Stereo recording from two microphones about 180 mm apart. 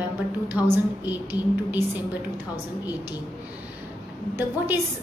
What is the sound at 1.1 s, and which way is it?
A woman's voice, 10° right (ahead or behind).